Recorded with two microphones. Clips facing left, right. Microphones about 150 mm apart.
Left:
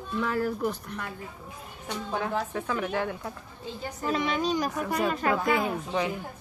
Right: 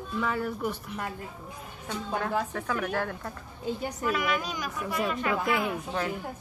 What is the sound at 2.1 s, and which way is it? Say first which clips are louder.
Speech: even; 5° left (ahead or behind).